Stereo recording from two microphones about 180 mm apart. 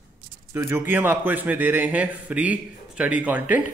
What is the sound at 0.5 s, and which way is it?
A man's voice, 15° right (ahead or behind).